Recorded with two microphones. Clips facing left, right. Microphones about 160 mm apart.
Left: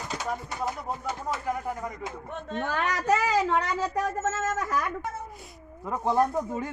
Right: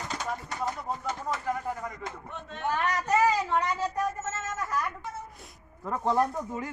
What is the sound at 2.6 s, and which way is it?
A woman's voice, 90° left.